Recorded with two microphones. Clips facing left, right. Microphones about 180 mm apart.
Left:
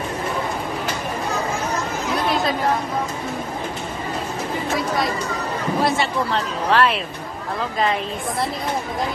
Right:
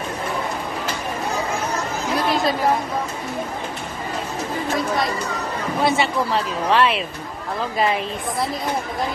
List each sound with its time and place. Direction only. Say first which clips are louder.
4.7 s speech: even; centre (ahead or behind)